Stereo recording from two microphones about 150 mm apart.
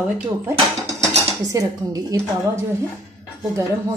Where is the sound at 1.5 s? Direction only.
25° right (ahead or behind).